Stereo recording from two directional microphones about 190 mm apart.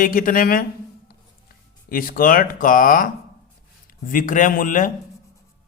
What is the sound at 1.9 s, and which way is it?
A man's voice, 50° left (ahead or behind).